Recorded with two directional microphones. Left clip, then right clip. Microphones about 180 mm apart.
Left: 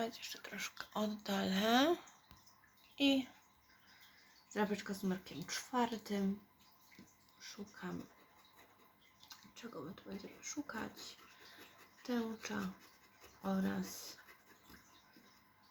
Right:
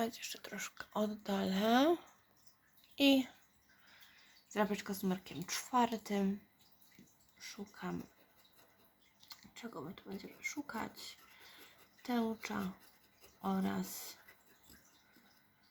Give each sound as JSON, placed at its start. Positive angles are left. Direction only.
{"t": 0.0, "sound": "speech", "side_deg": -30}
{"t": 4.5, "sound": "speech", "side_deg": -40}
{"t": 7.3, "sound": "speech", "side_deg": -40}
{"t": 9.3, "sound": "a sound", "side_deg": -40}
{"t": 10.4, "sound": "speech", "side_deg": -40}
{"t": 12.0, "sound": "speech", "side_deg": -40}